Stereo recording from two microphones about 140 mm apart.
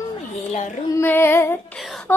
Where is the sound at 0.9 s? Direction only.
15° left (ahead or behind).